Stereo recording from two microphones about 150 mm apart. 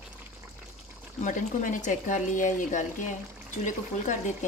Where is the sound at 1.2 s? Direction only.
55° left (ahead or behind).